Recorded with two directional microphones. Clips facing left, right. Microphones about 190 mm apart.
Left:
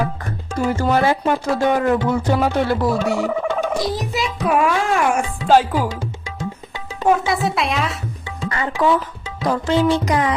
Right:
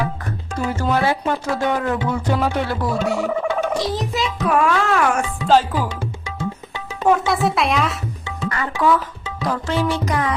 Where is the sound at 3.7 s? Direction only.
10° left (ahead or behind).